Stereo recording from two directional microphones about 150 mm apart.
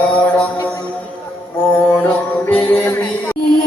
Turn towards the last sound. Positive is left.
turn(degrees=15)  # may be behind; listen again after turning